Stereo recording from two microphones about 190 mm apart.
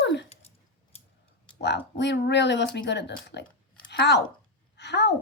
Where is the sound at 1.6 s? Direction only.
65° left (ahead or behind).